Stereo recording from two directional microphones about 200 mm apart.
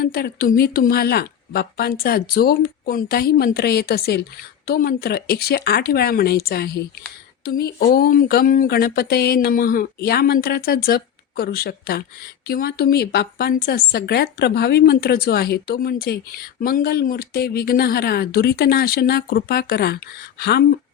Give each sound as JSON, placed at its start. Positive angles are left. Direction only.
{"t": 0.0, "sound": "speech", "side_deg": 50}